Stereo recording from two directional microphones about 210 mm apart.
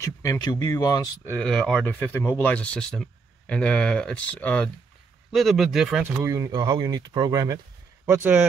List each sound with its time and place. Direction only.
0.0 s speech: 15° left (ahead or behind); by 6.0 s centre (ahead or behind)
6.2 s speech: 15° right (ahead or behind)